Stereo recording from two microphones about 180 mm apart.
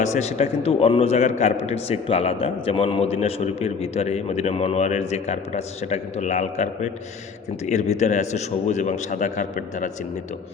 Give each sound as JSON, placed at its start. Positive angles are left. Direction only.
{"t": 0.0, "sound": "a man's voice", "side_deg": 40}